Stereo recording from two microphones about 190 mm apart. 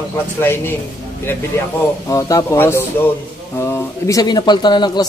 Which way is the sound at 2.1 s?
15° left (ahead or behind).